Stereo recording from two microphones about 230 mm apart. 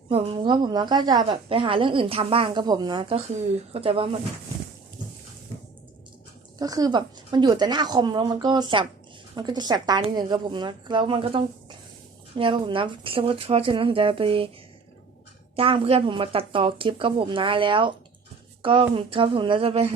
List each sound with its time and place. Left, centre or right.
0.1 s a woman's voice: right
6.6 s a woman's voice: centre
15.5 s a woman's voice: right